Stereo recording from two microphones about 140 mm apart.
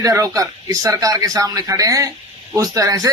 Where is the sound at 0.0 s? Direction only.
20° right (ahead or behind).